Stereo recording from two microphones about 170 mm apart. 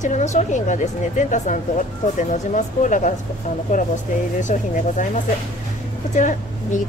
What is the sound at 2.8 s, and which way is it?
Speech, 50° left (ahead or behind).